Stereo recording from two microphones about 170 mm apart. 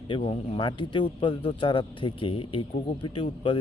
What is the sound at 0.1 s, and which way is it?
Speech, 30° left (ahead or behind).